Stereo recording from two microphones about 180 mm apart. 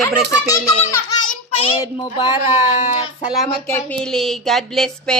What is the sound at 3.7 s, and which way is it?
A woman's voice, 5° left (ahead or behind).